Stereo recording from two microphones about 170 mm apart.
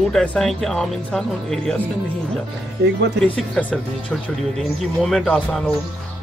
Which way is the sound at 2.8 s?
80° right.